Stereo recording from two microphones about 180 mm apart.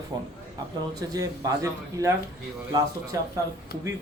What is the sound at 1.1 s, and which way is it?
Speech, 20° right (ahead or behind).